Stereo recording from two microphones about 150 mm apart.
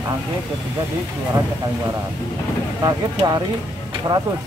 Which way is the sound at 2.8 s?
25° right (ahead or behind).